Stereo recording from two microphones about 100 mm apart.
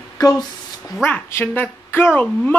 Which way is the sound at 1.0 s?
20° left (ahead or behind).